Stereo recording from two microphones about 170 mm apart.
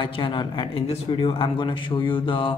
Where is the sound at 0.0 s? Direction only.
30° left (ahead or behind).